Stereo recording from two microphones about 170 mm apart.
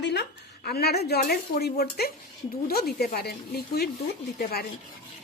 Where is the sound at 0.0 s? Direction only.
85° left; by 3.8 s 65° left (ahead or behind).